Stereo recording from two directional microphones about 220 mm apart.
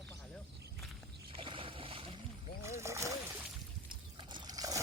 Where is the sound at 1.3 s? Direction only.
25° right (ahead or behind).